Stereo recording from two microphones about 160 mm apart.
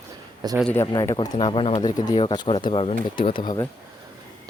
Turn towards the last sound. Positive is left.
turn(degrees=30)  # may be behind; listen again after turning